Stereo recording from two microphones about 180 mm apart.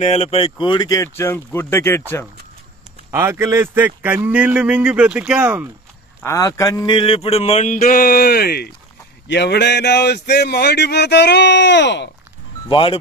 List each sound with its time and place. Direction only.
0.0 s speech: 35° left (ahead or behind); by 2.2 s 15° left (ahead or behind)
3.1 s a man's voice: 15° right (ahead or behind)
6.2 s a sound: 15° left (ahead or behind); by 8.7 s 60° left (ahead or behind)
9.3 s speech: 70° left (ahead or behind)
12.6 s speech: 30° left (ahead or behind)